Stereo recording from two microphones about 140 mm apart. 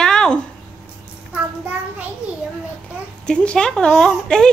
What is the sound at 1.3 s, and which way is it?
Speech, 10° right (ahead or behind).